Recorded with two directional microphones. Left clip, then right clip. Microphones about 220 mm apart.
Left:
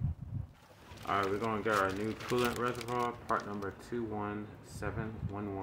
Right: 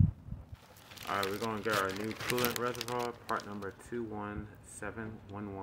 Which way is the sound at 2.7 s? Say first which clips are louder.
Left 1 dB; 30° right (ahead or behind).